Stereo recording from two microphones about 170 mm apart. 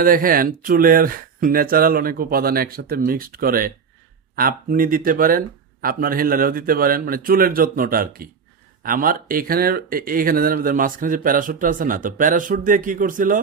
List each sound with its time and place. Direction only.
0.0 s speech: 55° right (ahead or behind)